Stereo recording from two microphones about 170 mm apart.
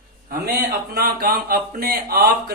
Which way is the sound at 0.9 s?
65° right (ahead or behind).